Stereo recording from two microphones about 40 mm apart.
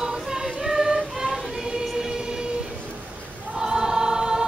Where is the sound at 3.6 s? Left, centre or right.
Centre.